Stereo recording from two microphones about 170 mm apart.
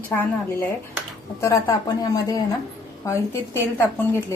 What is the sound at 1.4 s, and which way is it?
Speech, 20° left (ahead or behind).